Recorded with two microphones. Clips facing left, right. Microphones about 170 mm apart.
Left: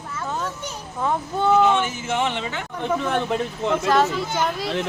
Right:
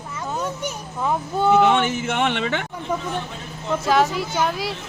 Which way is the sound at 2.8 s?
70° left (ahead or behind).